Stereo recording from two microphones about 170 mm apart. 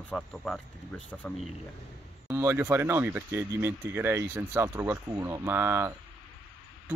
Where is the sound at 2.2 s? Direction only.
15° right (ahead or behind).